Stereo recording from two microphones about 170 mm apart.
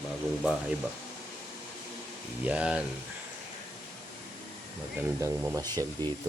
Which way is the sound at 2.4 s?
5° right (ahead or behind).